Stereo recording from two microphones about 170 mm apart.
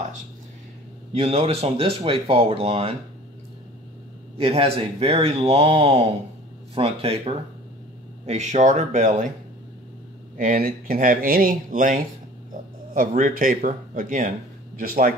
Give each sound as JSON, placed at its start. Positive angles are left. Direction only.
{"t": 1.1, "sound": "speech", "side_deg": -35}
{"t": 4.4, "sound": "speech", "side_deg": -35}
{"t": 10.3, "sound": "speech", "side_deg": -55}